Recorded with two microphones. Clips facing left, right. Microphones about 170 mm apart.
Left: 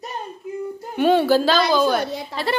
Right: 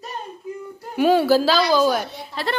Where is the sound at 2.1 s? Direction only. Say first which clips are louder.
Left 7 dB; 90° left.